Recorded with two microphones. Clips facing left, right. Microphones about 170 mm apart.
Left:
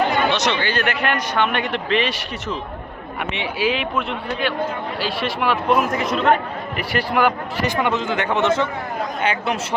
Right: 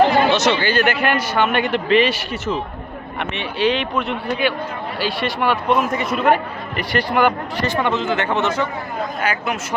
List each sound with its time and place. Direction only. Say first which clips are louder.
0.0 s chatter: right 5 dB; 35° right (ahead or behind)
0.3 s a man's voice: right 4 dB; 5° right (ahead or behind)
7.6 s speech: right 1 dB; 15° left (ahead or behind)